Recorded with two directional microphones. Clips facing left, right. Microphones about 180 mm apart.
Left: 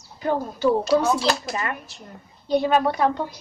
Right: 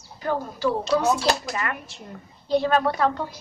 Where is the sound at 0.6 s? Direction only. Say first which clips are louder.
Left 3 dB; centre (ahead or behind).